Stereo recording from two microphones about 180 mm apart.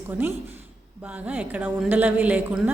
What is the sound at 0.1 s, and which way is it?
A woman's voice, 10° right (ahead or behind).